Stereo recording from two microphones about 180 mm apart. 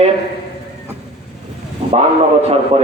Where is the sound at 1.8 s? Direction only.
30° right (ahead or behind).